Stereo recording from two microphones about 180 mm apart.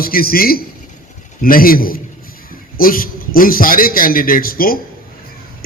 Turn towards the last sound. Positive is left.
turn(degrees=55)  # may be behind; listen again after turning